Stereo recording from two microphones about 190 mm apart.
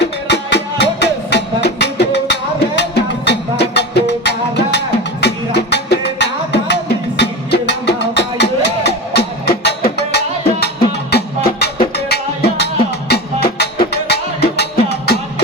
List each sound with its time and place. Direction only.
0.0 s music: 65° left (ahead or behind)